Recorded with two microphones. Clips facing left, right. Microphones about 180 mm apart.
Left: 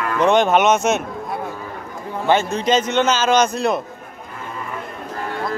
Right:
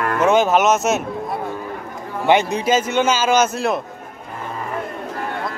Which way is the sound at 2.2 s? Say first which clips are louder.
Right 1 dB; 15° right (ahead or behind).